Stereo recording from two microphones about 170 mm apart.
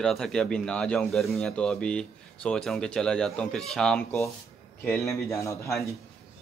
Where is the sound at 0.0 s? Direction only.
5° left (ahead or behind).